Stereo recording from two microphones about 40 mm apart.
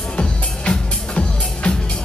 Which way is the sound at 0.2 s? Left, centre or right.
Left.